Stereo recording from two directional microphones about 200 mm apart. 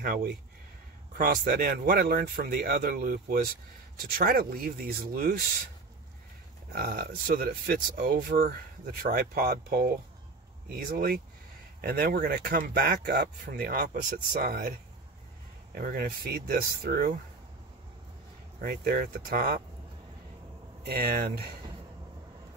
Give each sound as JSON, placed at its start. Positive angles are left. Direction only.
{"t": 0.0, "sound": "speech", "side_deg": -50}
{"t": 6.7, "sound": "speech", "side_deg": -50}
{"t": 15.7, "sound": "speech", "side_deg": -45}
{"t": 18.6, "sound": "speech", "side_deg": -50}
{"t": 20.8, "sound": "speech", "side_deg": -50}